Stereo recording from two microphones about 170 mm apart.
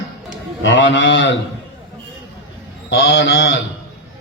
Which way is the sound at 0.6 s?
90° left.